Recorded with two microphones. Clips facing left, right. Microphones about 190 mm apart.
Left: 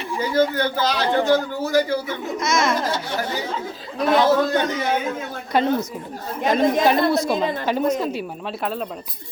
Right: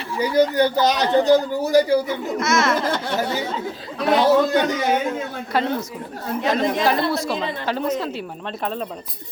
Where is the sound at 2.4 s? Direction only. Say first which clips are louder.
Right 1 dB; 15° left (ahead or behind).